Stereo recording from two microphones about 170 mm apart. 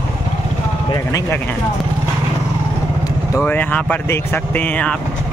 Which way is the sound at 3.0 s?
15° left (ahead or behind).